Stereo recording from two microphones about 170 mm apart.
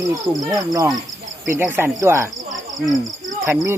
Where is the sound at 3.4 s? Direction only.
15° right (ahead or behind).